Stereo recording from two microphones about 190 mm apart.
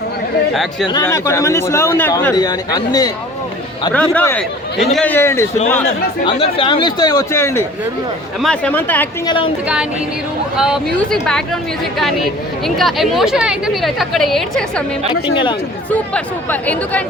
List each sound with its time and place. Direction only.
0.5 s speech: centre (ahead or behind)
0.9 s a man's voice: 15° left (ahead or behind)
2.3 s speech: 20° left (ahead or behind)
3.9 s a man's voice: 10° left (ahead or behind)
6.2 s a man's voice: 25° left (ahead or behind); by 9.0 s 10° left (ahead or behind)
9.2 s speech: 25° left (ahead or behind)
10.6 s speech: centre (ahead or behind)
15.9 s a man's voice: 10° left (ahead or behind)